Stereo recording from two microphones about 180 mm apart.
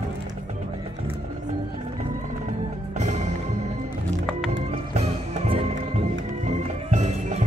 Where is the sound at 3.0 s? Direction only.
40° right (ahead or behind).